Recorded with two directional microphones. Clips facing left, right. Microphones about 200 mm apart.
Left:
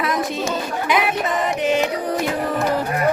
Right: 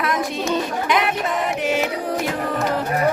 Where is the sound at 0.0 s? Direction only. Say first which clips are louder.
Left 1 dB; centre (ahead or behind).